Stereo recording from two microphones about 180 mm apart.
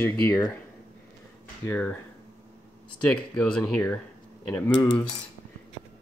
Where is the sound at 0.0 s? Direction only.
15° left (ahead or behind).